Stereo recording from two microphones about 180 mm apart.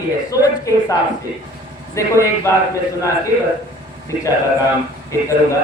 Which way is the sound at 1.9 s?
15° left (ahead or behind).